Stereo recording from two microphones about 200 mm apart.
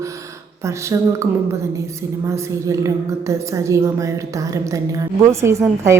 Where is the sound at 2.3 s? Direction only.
15° right (ahead or behind).